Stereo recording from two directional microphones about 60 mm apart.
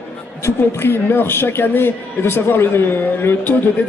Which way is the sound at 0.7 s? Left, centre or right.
Left.